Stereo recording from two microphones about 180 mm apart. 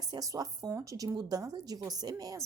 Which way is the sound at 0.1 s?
20° right (ahead or behind).